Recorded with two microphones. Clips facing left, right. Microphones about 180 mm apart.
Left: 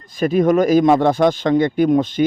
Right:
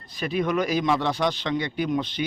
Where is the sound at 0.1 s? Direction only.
45° left (ahead or behind).